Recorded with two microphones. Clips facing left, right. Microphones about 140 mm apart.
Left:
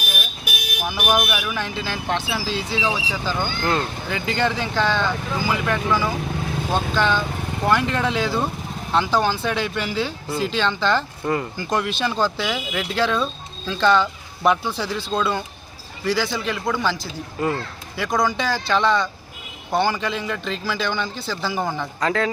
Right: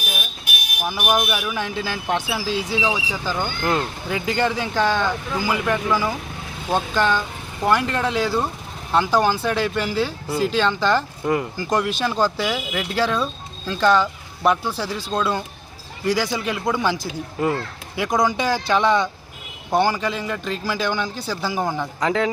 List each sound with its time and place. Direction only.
0.9 s speech: 5° right (ahead or behind)